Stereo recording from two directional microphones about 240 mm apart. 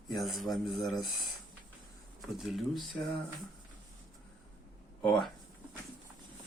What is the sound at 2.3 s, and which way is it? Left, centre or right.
Speech, centre.